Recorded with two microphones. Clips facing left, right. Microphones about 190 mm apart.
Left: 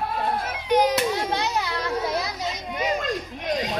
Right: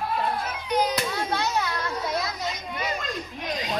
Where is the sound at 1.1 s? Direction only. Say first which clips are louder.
Left 1 dB; 15° left (ahead or behind).